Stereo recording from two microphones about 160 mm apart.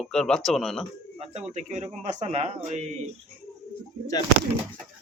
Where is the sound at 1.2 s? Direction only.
45° right (ahead or behind).